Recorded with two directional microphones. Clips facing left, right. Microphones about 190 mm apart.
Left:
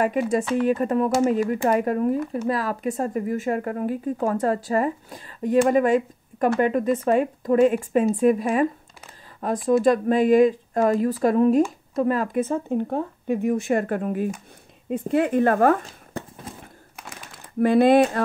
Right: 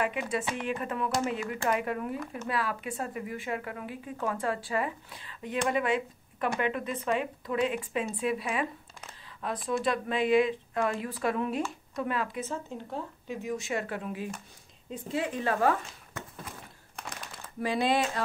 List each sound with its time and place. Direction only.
0.0 s speech: 45° left (ahead or behind)
16.1 s a sound: 30° left (ahead or behind)
16.9 s crumpling: 5° left (ahead or behind)
17.6 s speech: 55° left (ahead or behind)